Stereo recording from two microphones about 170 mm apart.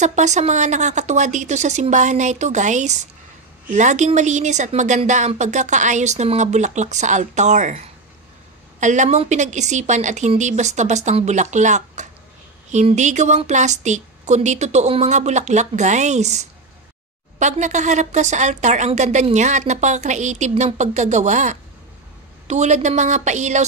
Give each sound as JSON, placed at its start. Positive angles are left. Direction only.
{"t": 0.0, "sound": "speech", "side_deg": -45}